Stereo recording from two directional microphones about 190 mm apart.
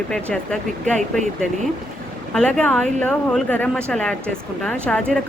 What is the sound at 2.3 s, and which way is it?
Speech, 5° left (ahead or behind).